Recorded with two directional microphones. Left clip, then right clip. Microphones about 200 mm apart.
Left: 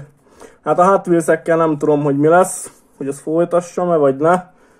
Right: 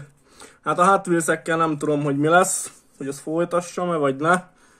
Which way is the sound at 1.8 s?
35° right (ahead or behind).